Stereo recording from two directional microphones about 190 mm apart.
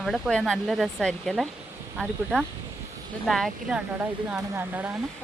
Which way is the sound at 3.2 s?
Centre (ahead or behind).